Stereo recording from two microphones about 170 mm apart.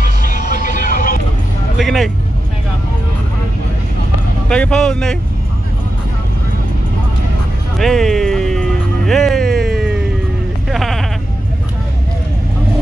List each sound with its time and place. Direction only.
0.0 s vehicle: 50° left (ahead or behind)
1.8 s speech: centre (ahead or behind)
4.5 s speech: 5° left (ahead or behind)
7.8 s music: centre (ahead or behind)